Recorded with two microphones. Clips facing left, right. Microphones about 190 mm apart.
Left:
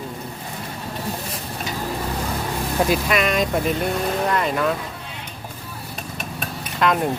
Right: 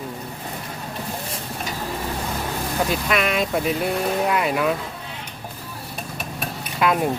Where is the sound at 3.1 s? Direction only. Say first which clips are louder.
Left 1 dB; centre (ahead or behind).